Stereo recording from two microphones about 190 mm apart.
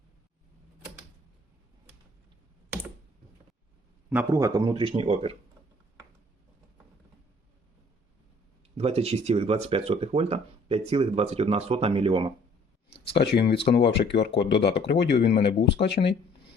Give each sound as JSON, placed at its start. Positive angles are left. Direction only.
{"t": 4.1, "sound": "speech", "side_deg": -15}
{"t": 8.8, "sound": "speech", "side_deg": -30}
{"t": 12.9, "sound": "speech", "side_deg": 60}